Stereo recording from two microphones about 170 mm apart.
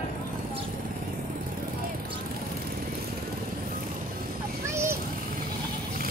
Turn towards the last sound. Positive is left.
turn(degrees=-15)  # may be behind; listen again after turning